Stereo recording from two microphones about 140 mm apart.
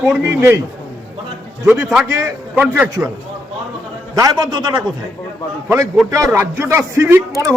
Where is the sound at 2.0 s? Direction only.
25° right (ahead or behind).